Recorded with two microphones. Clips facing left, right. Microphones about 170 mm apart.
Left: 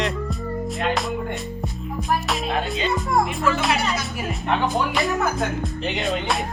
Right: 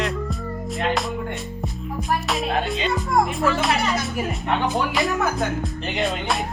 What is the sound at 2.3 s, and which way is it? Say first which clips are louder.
Music: right 1 dB; centre (ahead or behind).